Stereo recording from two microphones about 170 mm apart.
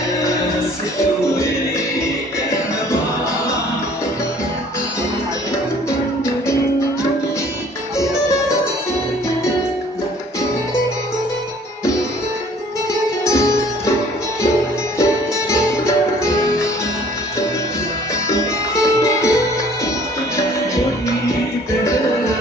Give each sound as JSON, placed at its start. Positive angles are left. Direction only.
{"t": 13.2, "sound": "music", "side_deg": 20}
{"t": 15.5, "sound": "music", "side_deg": 20}
{"t": 18.3, "sound": "music", "side_deg": 20}